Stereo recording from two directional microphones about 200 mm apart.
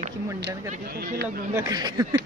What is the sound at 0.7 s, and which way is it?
Speech, 50° right (ahead or behind).